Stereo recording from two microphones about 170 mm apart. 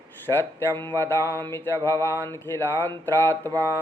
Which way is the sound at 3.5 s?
15° right (ahead or behind).